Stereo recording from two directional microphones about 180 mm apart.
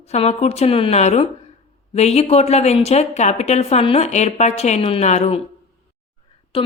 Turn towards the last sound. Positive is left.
turn(degrees=30)  # may be behind; listen again after turning